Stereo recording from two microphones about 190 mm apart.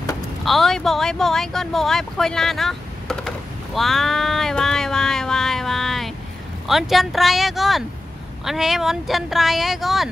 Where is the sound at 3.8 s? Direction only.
Centre (ahead or behind).